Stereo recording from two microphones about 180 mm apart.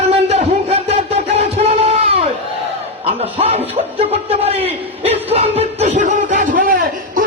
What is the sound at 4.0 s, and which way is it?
Chuckle, 35° right (ahead or behind).